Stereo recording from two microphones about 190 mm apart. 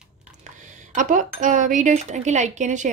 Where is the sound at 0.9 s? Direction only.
40° right (ahead or behind).